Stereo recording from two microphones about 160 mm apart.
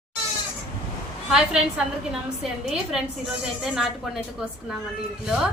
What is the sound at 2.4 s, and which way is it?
Speech, 5° right (ahead or behind).